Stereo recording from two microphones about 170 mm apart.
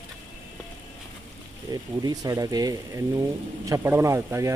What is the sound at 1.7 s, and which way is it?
Speech, 20° right (ahead or behind).